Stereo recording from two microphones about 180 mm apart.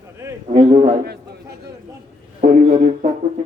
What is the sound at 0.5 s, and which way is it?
Speech, 30° right (ahead or behind).